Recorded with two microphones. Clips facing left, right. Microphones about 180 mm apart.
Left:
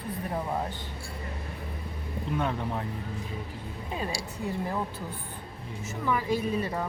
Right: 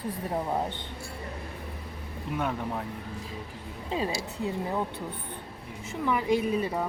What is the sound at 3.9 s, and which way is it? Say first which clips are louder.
Speech: right 4 dB; 25° right (ahead or behind).